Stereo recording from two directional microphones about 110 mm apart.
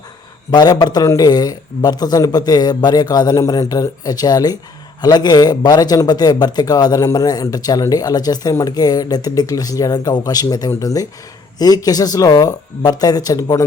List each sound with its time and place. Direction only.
0.5 s a man's voice: 40° left (ahead or behind)